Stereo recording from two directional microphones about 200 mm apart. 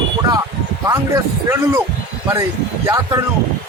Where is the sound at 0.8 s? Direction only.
15° right (ahead or behind).